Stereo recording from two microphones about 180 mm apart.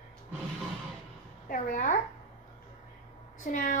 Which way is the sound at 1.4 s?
50° left (ahead or behind).